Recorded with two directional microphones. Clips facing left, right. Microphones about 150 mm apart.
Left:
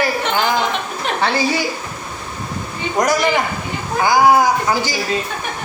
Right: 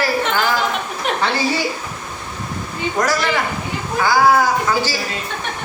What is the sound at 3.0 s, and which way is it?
Speech, 15° left (ahead or behind).